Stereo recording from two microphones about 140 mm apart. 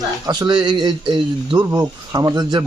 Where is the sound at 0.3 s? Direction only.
30° right (ahead or behind).